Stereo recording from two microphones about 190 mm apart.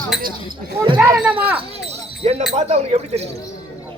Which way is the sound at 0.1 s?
Centre (ahead or behind).